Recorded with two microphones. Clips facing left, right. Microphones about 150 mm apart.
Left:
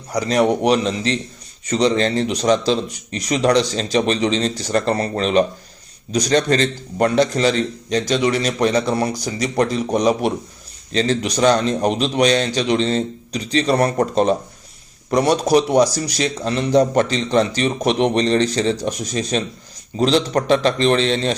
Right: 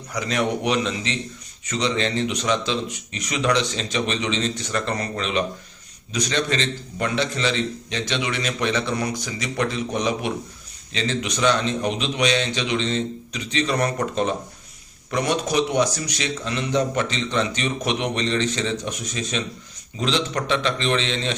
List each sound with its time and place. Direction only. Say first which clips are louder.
0.1 s a man's voice: left 7 dB; 35° left (ahead or behind)